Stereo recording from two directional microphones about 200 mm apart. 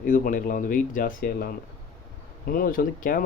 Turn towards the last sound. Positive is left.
turn(degrees=45)  # may be behind; listen again after turning